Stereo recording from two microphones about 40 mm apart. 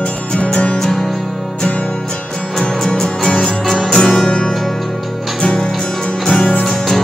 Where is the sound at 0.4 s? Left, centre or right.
Left.